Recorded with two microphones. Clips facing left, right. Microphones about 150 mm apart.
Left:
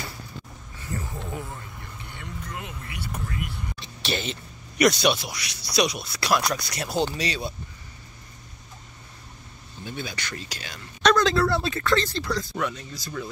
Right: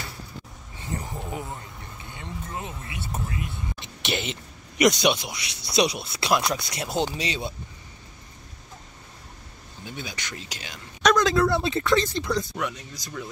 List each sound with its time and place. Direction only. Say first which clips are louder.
0.7 s speech: right 1 dB; 20° right (ahead or behind)
9.8 s speech: left 2 dB; 15° right (ahead or behind)